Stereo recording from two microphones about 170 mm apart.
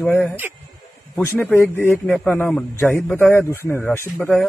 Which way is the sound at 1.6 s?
10° left (ahead or behind).